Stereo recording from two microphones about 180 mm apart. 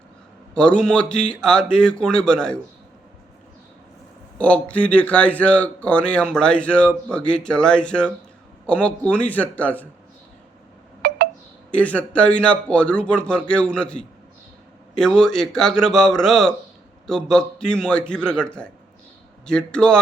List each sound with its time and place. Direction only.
0.5 s speech: 5° left (ahead or behind)
4.4 s a man's voice: 5° left (ahead or behind)
11.0 s a sound: 55° right (ahead or behind)
11.7 s a man's voice: 5° left (ahead or behind)